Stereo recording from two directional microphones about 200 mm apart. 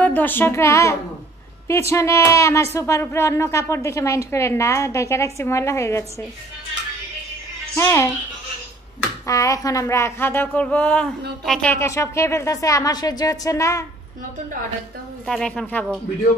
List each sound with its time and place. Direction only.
0.0 s speech: 10° left (ahead or behind)
7.7 s speech: 15° left (ahead or behind)
9.2 s speech: 15° left (ahead or behind)
15.2 s a woman's voice: 5° left (ahead or behind)